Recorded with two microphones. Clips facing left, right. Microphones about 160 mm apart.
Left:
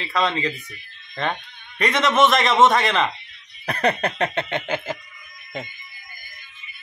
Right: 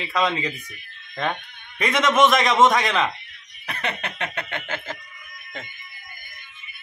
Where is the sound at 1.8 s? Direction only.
Centre (ahead or behind).